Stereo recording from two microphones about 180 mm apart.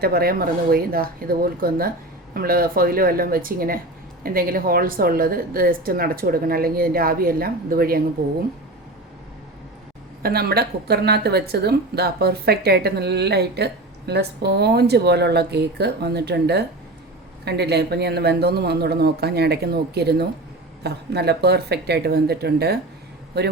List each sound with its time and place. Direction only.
0.0 s a woman's voice: 60° right (ahead or behind)
10.2 s a woman's voice: 60° right (ahead or behind)